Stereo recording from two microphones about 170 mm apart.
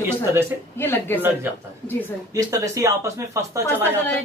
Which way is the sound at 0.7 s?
10° left (ahead or behind).